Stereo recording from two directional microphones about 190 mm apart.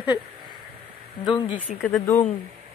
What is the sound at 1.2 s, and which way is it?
Speech, 25° left (ahead or behind).